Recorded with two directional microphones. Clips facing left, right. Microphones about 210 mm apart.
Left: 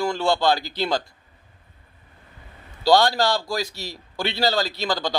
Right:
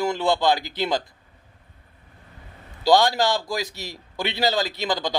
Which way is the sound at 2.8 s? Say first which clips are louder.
Even; 20° right (ahead or behind).